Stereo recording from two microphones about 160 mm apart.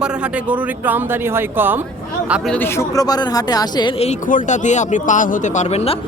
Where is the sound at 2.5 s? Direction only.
15° left (ahead or behind).